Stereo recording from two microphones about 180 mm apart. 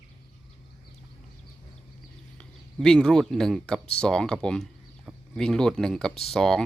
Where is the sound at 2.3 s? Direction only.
5° left (ahead or behind).